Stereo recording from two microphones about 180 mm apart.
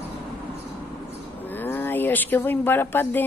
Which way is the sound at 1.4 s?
10° left (ahead or behind).